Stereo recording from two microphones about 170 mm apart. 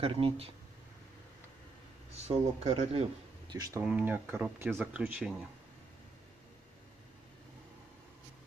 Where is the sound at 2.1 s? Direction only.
40° right (ahead or behind); by 3.8 s 25° right (ahead or behind).